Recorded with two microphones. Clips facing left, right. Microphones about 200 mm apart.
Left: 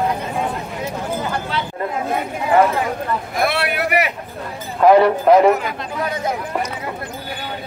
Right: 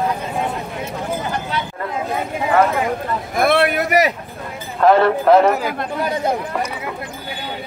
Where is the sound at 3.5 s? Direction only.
45° right (ahead or behind).